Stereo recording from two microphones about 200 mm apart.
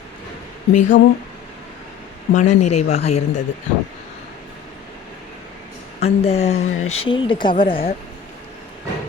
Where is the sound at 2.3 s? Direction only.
35° left (ahead or behind).